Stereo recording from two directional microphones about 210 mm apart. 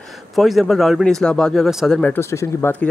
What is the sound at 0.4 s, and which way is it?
Speech, centre (ahead or behind).